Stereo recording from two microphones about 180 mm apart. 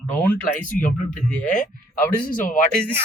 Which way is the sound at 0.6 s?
45° left (ahead or behind).